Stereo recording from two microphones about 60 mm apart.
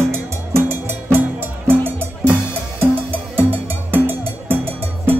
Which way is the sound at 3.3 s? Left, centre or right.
Right.